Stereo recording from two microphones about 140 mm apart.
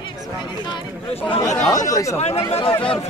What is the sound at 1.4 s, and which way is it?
Speech, 25° left (ahead or behind).